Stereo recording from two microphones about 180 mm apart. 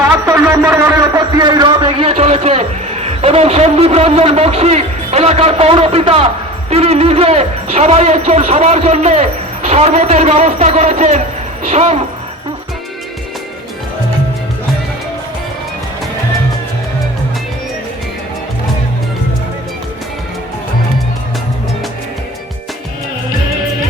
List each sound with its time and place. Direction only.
0.3 s music: 15° right (ahead or behind)
1.4 s a sound: 25° right (ahead or behind)
6.7 s speech: 35° right (ahead or behind)